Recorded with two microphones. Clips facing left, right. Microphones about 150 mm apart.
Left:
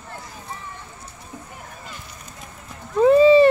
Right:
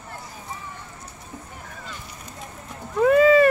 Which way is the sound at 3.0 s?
30° left (ahead or behind).